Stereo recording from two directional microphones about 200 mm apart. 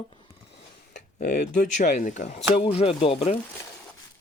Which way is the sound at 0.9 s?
35° left (ahead or behind).